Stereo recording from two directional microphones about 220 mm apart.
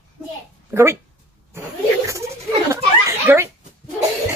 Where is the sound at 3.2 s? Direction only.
10° right (ahead or behind).